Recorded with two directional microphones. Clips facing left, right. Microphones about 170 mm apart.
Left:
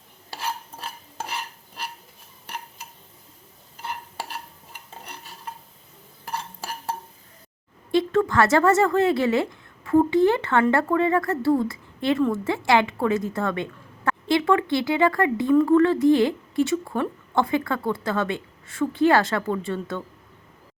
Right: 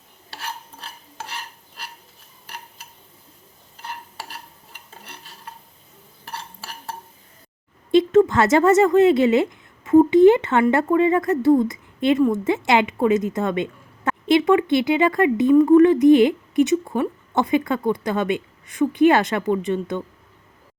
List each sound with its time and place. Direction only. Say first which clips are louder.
7.9 s a woman's voice: right 6 dB; 20° right (ahead or behind)